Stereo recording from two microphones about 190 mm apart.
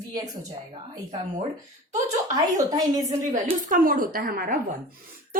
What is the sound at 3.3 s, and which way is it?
A woman's voice, 45° right (ahead or behind).